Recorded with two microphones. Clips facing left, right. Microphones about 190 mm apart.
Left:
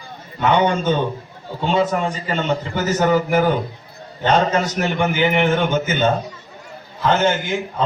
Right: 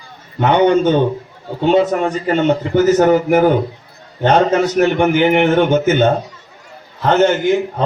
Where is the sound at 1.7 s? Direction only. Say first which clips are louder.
Right 5 dB; 60° right (ahead or behind).